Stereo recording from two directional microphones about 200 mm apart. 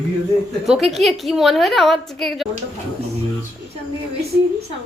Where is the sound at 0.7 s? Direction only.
Centre (ahead or behind).